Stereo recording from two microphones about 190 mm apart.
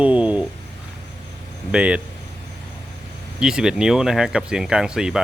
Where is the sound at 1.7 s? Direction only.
5° right (ahead or behind).